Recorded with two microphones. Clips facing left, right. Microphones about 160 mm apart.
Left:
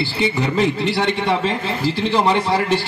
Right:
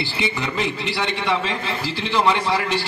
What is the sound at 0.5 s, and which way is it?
A man's voice, 50° left (ahead or behind).